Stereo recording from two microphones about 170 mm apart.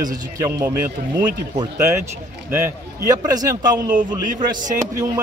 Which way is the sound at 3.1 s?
20° right (ahead or behind).